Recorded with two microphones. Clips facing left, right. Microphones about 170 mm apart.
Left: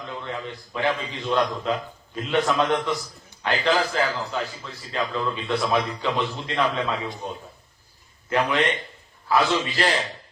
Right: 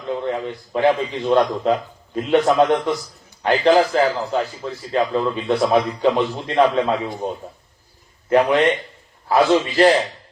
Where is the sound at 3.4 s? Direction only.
35° right (ahead or behind).